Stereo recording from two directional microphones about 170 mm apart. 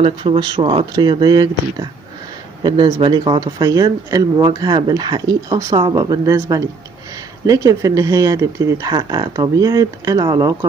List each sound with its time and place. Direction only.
0.0 s speech: 30° right (ahead or behind)